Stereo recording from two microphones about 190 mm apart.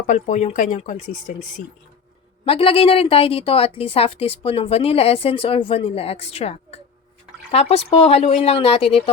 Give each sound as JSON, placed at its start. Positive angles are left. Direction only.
{"t": 0.1, "sound": "a woman's voice", "side_deg": 40}